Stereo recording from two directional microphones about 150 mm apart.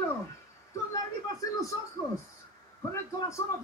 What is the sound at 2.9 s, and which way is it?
Speech, 20° left (ahead or behind).